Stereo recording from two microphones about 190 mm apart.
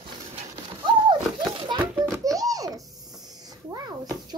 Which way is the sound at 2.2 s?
20° right (ahead or behind).